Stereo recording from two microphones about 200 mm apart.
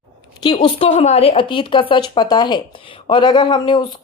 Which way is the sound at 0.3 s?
25° left (ahead or behind).